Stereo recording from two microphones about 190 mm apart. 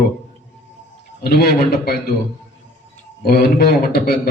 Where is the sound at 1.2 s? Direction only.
55° left (ahead or behind).